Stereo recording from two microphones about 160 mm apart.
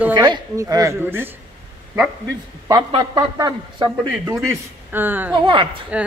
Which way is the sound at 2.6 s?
25° right (ahead or behind).